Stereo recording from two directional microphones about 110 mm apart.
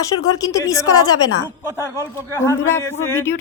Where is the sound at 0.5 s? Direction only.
30° left (ahead or behind).